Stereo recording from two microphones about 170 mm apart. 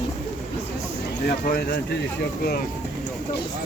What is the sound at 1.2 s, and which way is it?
Speech, 60° left (ahead or behind).